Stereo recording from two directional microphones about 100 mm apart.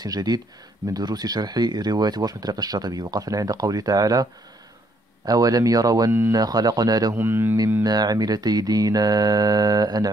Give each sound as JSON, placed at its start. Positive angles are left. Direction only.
{"t": 0.0, "sound": "speech", "side_deg": -40}
{"t": 7.2, "sound": "speech", "side_deg": -20}
{"t": 7.8, "sound": "speech", "side_deg": -40}